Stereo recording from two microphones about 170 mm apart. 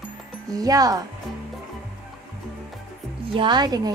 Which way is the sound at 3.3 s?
25° right (ahead or behind).